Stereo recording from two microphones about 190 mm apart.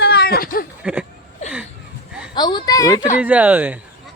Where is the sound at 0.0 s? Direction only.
55° left (ahead or behind).